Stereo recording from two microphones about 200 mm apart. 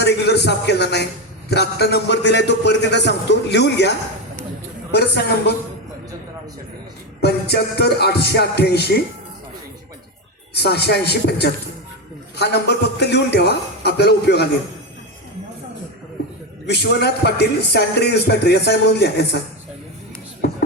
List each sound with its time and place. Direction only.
0.0 s speech: 55° left (ahead or behind)
7.2 s music: 55° left (ahead or behind)
10.5 s music: 55° left (ahead or behind)
12.4 s speech: 55° left (ahead or behind)
16.6 s speech: 55° left (ahead or behind)